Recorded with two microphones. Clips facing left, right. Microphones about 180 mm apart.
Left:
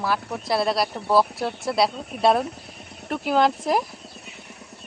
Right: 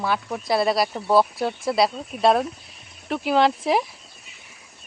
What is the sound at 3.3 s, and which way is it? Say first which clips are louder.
Speech: right 1 dB; centre (ahead or behind).